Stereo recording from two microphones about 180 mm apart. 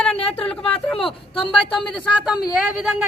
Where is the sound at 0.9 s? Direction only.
30° left (ahead or behind).